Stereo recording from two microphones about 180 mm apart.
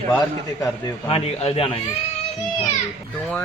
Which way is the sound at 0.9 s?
30° left (ahead or behind).